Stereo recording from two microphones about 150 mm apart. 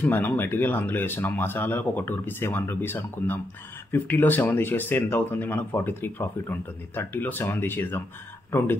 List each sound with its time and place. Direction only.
0.0 s speech: 15° left (ahead or behind)